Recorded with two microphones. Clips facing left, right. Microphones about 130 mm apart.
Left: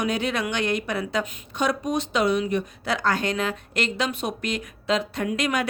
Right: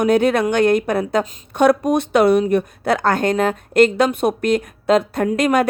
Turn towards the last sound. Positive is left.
turn(degrees=-50)  # may be behind; listen again after turning